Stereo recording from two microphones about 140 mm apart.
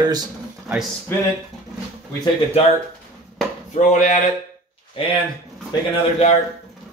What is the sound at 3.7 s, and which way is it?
Speech, 65° left (ahead or behind).